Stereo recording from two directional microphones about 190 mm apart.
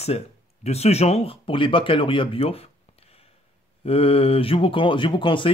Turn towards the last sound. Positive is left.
turn(degrees=25)  # may be behind; listen again after turning